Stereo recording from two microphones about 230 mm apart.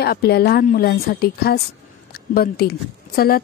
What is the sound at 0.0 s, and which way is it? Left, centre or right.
A woman's voice, left.